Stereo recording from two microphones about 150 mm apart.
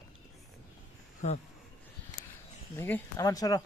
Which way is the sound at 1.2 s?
50° left (ahead or behind).